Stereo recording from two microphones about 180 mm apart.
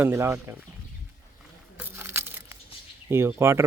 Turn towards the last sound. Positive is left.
turn(degrees=-15)  # may be behind; listen again after turning